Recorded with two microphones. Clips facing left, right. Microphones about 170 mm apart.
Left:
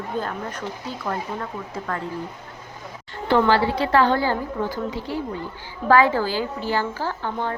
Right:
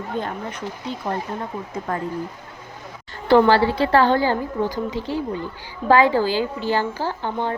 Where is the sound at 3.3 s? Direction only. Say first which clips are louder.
Right 4 dB; 30° right (ahead or behind).